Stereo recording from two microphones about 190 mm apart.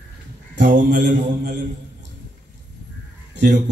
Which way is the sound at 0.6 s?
45° right (ahead or behind).